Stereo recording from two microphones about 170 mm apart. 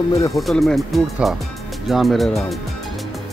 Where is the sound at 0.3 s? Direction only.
Centre (ahead or behind).